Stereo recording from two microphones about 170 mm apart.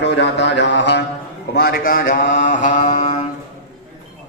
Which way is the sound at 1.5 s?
65° left (ahead or behind).